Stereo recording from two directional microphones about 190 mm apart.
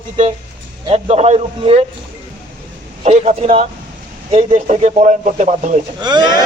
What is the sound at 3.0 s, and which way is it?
A man's voice, 35° right (ahead or behind).